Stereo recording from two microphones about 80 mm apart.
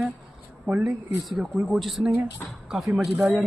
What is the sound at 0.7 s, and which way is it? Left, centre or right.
Speech, centre.